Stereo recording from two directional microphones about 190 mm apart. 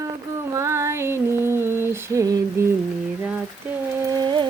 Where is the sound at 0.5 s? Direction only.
15° right (ahead or behind).